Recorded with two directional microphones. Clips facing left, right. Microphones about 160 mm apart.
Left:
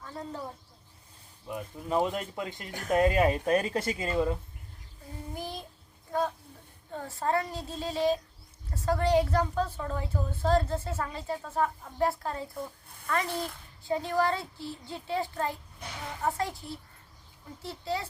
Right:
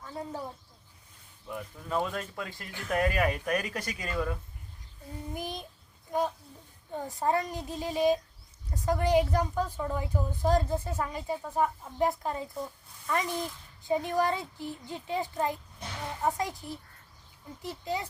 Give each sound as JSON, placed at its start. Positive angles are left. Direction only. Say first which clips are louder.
{"t": 0.0, "sound": "a sound", "louder": "right 1 dB", "side_deg": -10}
{"t": 1.5, "sound": "speech", "louder": "left 3 dB", "side_deg": 20}
{"t": 5.3, "sound": "a woman's voice", "louder": "right 1 dB", "side_deg": -15}
{"t": 13.3, "sound": "a child's voice", "louder": "even", "side_deg": 60}
{"t": 13.8, "sound": "a woman's voice", "louder": "even", "side_deg": -15}